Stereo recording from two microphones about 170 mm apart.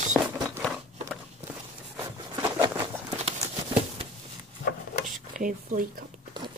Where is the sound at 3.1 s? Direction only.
40° right (ahead or behind).